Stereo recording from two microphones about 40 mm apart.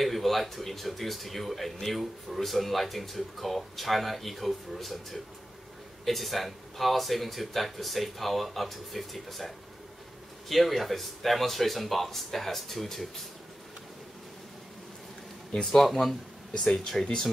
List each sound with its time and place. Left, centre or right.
0.0 s a man's voice: centre
10.5 s a man's voice: centre
15.6 s a man's voice: centre